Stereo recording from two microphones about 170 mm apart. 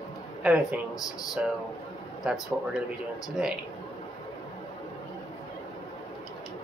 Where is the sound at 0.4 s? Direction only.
5° right (ahead or behind).